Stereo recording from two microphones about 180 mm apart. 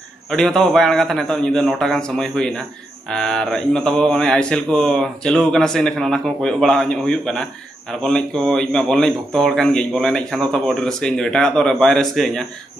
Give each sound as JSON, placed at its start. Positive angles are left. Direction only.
{"t": 0.3, "sound": "a man's voice", "side_deg": 5}